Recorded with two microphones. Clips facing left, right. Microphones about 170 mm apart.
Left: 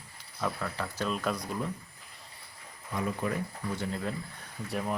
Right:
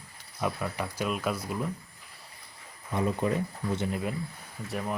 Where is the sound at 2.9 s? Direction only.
25° right (ahead or behind).